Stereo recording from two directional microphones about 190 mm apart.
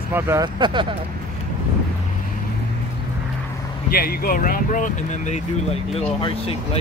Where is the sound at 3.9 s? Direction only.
50° left (ahead or behind); by 6.8 s 30° left (ahead or behind).